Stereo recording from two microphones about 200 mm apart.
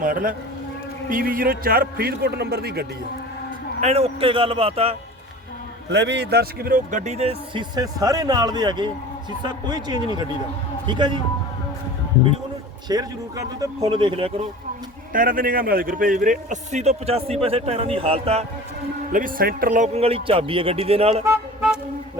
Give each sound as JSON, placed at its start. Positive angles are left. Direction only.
{"t": 0.0, "sound": "a man's voice", "side_deg": -45}
{"t": 3.8, "sound": "a man's voice", "side_deg": -30}
{"t": 5.9, "sound": "a man's voice", "side_deg": -60}
{"t": 12.9, "sound": "a man's voice", "side_deg": -20}
{"t": 15.1, "sound": "a man's voice", "side_deg": -45}
{"t": 19.1, "sound": "a man's voice", "side_deg": -45}